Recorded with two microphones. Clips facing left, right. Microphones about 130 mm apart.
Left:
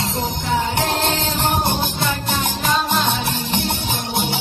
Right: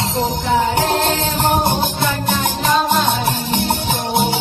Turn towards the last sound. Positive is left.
turn(degrees=-40)  # may be behind; listen again after turning